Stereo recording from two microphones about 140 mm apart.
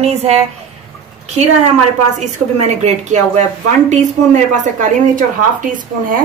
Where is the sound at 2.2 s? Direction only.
55° right (ahead or behind).